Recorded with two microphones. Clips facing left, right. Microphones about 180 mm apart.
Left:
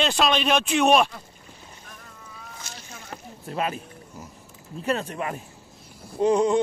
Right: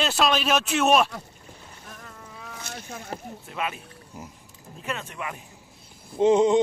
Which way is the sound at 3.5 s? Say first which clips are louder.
Left 4 dB; 35° left (ahead or behind).